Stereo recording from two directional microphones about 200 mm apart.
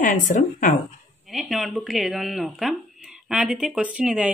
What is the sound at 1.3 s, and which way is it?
A woman's voice, centre (ahead or behind).